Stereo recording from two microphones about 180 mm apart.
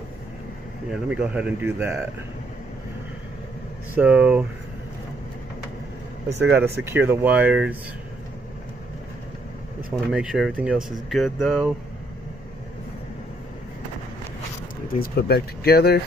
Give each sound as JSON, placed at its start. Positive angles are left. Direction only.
{"t": 0.9, "sound": "speech", "side_deg": -5}
{"t": 3.9, "sound": "speech", "side_deg": -10}
{"t": 6.8, "sound": "speech", "side_deg": -10}
{"t": 9.9, "sound": "speech", "side_deg": -5}
{"t": 14.9, "sound": "speech", "side_deg": 60}